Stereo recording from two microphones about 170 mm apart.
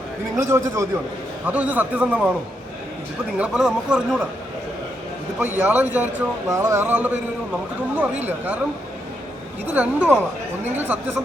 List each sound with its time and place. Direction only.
0.3 s a man's voice: 15° right (ahead or behind)
3.3 s a man's voice: 5° right (ahead or behind)
5.4 s a man's voice: 10° right (ahead or behind)
8.3 s a man's voice: 10° right (ahead or behind)
9.7 s a man's voice: 10° right (ahead or behind)